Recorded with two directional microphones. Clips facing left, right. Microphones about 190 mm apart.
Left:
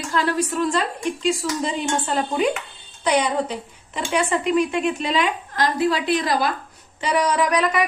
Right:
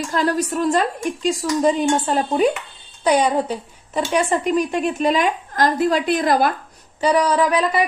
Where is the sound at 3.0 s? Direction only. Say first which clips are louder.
Right 3 dB; 40° right (ahead or behind).